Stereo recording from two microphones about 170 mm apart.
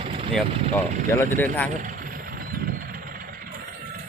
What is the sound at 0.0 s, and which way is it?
Vehicle, 35° right (ahead or behind).